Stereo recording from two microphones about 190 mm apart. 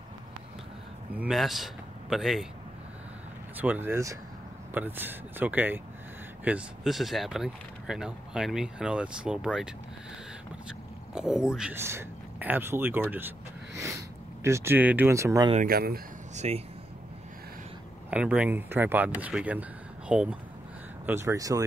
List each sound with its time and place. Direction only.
1.1 s speech: 5° right (ahead or behind)
3.5 s speech: 10° right (ahead or behind)
11.1 s speech: 5° right (ahead or behind)
15.5 s speech: 50° right (ahead or behind)
16.3 s speech: 35° right (ahead or behind)
18.1 s speech: 5° right (ahead or behind)